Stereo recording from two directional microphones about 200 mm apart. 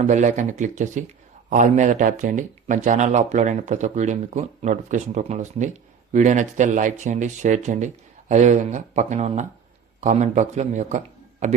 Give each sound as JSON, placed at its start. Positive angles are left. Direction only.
{"t": 0.0, "sound": "speech", "side_deg": -40}